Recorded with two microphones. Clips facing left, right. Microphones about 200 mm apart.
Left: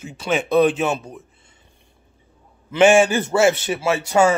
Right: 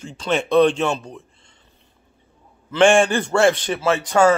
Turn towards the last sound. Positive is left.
turn(degrees=10)  # may be behind; listen again after turning